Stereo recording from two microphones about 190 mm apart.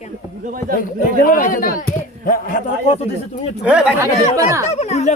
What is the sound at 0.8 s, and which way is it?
Speech, 45° left (ahead or behind).